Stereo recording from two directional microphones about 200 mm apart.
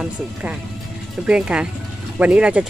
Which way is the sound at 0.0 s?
5° right (ahead or behind).